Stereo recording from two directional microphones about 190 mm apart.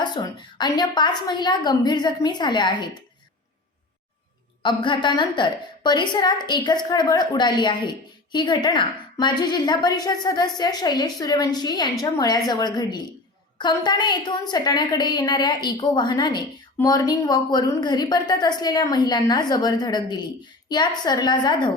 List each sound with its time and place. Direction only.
0.0 s a woman's voice: 25° left (ahead or behind)
4.6 s a woman's voice: 25° left (ahead or behind)